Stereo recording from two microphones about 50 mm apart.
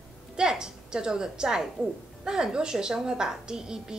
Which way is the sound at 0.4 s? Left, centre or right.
Centre.